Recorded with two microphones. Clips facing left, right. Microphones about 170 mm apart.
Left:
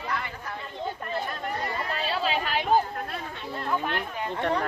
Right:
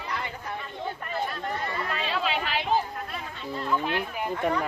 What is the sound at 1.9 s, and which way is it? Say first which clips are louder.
Chatter: left 2 dB; 35° left (ahead or behind).